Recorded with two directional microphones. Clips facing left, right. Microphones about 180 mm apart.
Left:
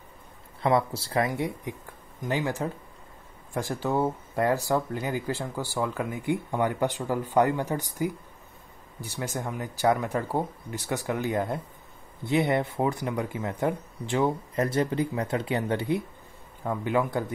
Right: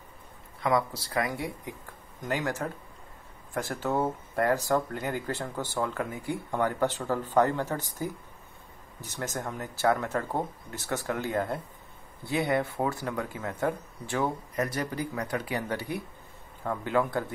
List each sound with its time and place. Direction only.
0.6 s speech: 25° left (ahead or behind)
9.2 s speech: 10° left (ahead or behind)
16.6 s speech: 15° left (ahead or behind)